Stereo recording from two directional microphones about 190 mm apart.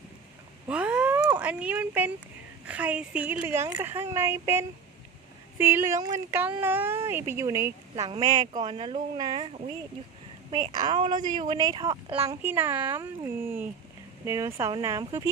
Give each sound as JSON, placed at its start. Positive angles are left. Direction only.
{"t": 0.7, "sound": "cat", "side_deg": -5}
{"t": 2.6, "sound": "a woman's voice", "side_deg": -5}
{"t": 10.5, "sound": "speech", "side_deg": -20}
{"t": 12.4, "sound": "a woman's voice", "side_deg": -10}